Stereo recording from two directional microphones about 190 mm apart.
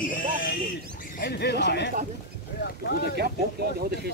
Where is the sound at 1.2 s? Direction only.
55° left (ahead or behind).